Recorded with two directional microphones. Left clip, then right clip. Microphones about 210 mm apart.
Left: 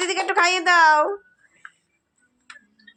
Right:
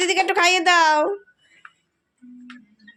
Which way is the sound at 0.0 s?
35° right (ahead or behind).